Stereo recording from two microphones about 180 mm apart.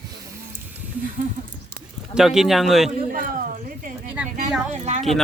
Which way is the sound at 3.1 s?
50° right (ahead or behind).